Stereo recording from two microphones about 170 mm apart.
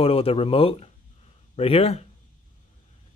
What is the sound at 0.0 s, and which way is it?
Speech, 35° left (ahead or behind).